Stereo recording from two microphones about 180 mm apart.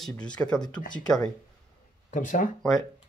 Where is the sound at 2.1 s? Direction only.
45° left (ahead or behind).